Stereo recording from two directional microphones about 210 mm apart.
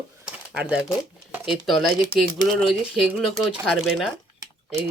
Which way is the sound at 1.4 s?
Centre (ahead or behind).